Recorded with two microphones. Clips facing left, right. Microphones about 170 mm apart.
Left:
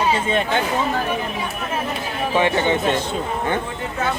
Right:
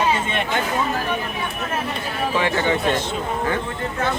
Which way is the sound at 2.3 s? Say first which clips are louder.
Left 3 dB; 20° left (ahead or behind).